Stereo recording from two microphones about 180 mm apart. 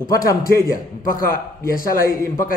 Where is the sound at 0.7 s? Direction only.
50° left (ahead or behind).